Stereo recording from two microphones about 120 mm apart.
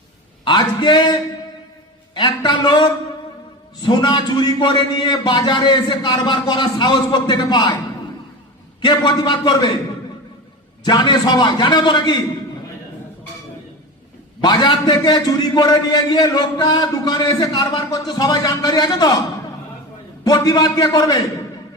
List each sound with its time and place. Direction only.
0.4 s a man's voice: 40° left (ahead or behind)
8.8 s a man's voice: 40° left (ahead or behind)
10.8 s a man's voice: 40° left (ahead or behind)
14.4 s a man's voice: 40° left (ahead or behind)
20.2 s a man's voice: 35° left (ahead or behind)